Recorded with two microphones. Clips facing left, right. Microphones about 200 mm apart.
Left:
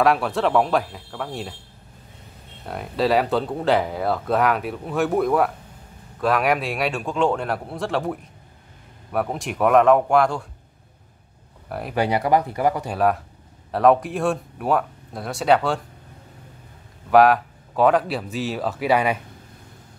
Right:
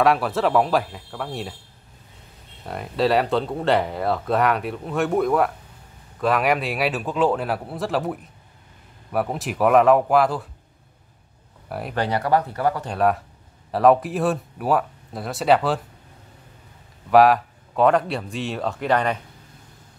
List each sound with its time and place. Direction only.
0.0 s speech: centre (ahead or behind)
2.6 s speech: centre (ahead or behind)
11.9 s speech: 10° left (ahead or behind)
12.9 s speech: centre (ahead or behind)
17.1 s speech: centre (ahead or behind)